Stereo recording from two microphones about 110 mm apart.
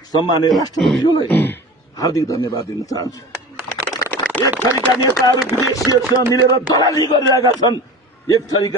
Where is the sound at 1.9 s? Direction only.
35° left (ahead or behind).